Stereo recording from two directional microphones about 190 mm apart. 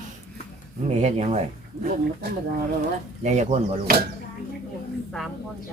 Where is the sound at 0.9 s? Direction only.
35° right (ahead or behind).